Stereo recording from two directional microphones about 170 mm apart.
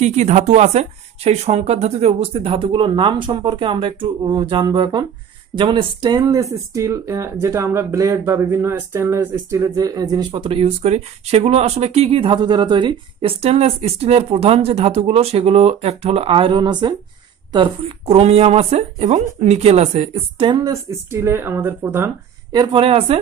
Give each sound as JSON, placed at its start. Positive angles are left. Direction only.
{"t": 0.0, "sound": "speech", "side_deg": -45}
{"t": 20.7, "sound": "speech", "side_deg": -15}
{"t": 22.5, "sound": "speech", "side_deg": -25}